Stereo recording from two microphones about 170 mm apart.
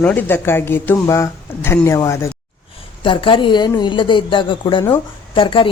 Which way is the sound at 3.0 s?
30° left (ahead or behind).